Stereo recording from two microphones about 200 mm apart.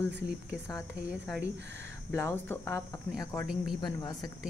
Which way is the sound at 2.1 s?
10° left (ahead or behind).